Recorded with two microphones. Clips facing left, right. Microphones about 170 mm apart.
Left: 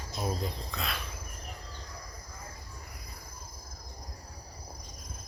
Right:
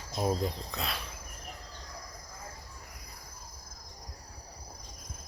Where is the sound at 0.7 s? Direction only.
35° right (ahead or behind).